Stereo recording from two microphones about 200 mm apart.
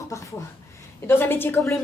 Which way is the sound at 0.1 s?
15° left (ahead or behind).